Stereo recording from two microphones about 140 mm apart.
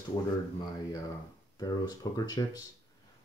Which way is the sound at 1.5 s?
25° left (ahead or behind).